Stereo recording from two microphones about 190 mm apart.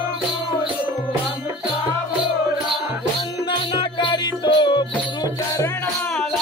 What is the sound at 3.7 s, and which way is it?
Music, 25° left (ahead or behind).